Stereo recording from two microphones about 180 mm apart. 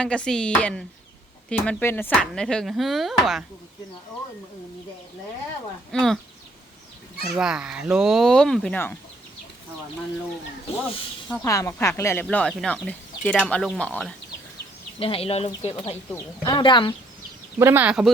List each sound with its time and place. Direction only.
0.0 s speech: 5° left (ahead or behind)
5.9 s speech: 5° left (ahead or behind)
7.3 s speech: 5° right (ahead or behind)
11.4 s speech: 15° left (ahead or behind)
14.9 s speech: 30° left (ahead or behind)
17.6 s speech: 10° right (ahead or behind)